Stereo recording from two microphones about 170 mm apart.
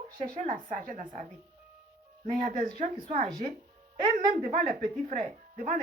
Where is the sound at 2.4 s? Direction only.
50° right (ahead or behind).